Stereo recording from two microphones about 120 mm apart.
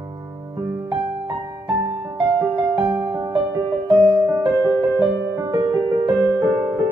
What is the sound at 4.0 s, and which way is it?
Music, 40° right (ahead or behind).